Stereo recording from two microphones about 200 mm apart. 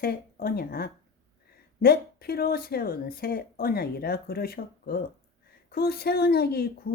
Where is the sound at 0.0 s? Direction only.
50° left (ahead or behind).